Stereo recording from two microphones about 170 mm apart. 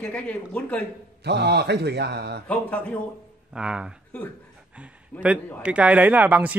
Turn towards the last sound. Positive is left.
turn(degrees=-10)  # may be behind; listen again after turning